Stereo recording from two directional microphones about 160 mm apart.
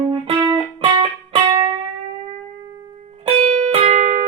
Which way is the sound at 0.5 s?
35° right (ahead or behind).